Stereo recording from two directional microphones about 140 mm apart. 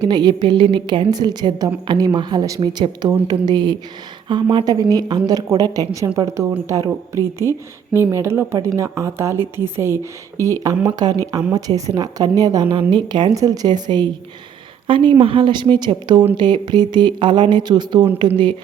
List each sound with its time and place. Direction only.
0.0 s a woman's voice: 30° right (ahead or behind)